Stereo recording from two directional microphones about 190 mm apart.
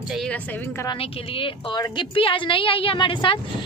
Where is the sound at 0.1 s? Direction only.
5° left (ahead or behind).